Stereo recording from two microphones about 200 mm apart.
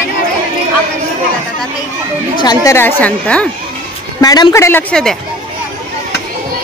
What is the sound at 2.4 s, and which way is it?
A woman's voice, 20° left (ahead or behind).